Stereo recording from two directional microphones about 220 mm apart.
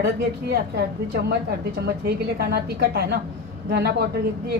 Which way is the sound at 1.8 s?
45° right (ahead or behind).